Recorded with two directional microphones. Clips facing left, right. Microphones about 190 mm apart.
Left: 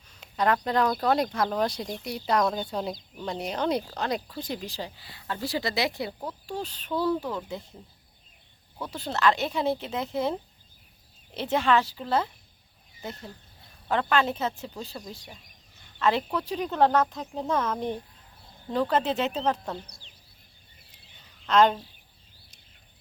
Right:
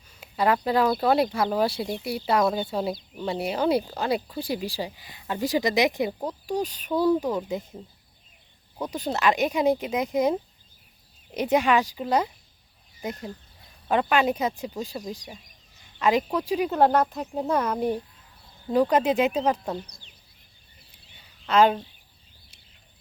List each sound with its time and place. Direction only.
0.1 s speech: 5° right (ahead or behind)
8.8 s speech: 15° right (ahead or behind)
11.3 s speech: 15° right (ahead or behind)
21.4 s speech: 10° right (ahead or behind)